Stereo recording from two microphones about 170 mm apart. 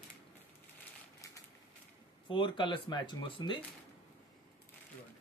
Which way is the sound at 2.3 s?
30° left (ahead or behind).